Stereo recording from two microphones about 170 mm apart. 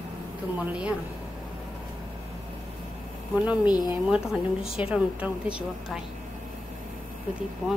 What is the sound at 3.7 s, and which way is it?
Speech, 25° left (ahead or behind).